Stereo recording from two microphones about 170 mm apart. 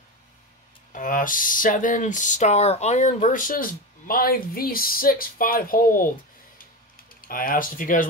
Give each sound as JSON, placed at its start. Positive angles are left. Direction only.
{"t": 0.9, "sound": "speech", "side_deg": 50}
{"t": 7.2, "sound": "speech", "side_deg": 55}